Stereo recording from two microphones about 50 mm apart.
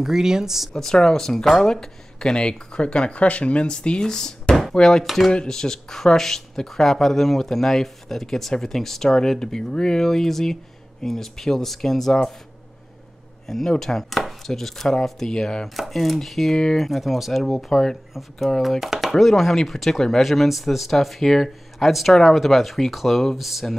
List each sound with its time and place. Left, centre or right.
0.0 s speech: centre
0.7 s speech: centre
5.0 s speech: centre
5.3 s speech: centre
13.5 s speech: centre